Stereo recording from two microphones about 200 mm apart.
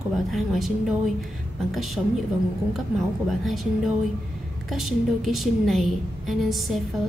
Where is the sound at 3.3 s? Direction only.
Centre (ahead or behind).